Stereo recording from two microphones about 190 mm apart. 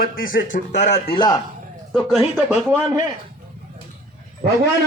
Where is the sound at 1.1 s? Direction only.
20° left (ahead or behind).